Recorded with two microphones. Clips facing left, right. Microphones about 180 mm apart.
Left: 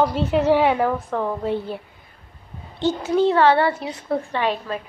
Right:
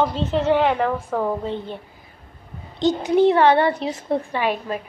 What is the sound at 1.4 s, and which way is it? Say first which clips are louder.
Speech: left 3 dB; 5° left (ahead or behind).